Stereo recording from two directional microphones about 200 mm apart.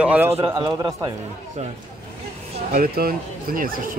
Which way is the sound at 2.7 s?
45° right (ahead or behind).